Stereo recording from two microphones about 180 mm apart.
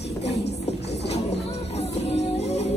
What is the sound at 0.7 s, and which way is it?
Music, 70° left (ahead or behind).